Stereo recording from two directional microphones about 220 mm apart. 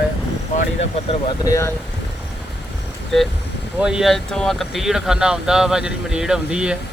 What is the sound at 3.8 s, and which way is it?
Speech, 5° right (ahead or behind).